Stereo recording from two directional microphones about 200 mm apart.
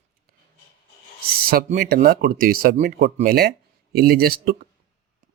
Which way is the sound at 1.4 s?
50° right (ahead or behind).